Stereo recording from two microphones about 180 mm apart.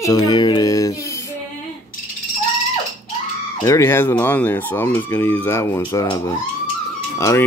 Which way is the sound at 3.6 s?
15° left (ahead or behind).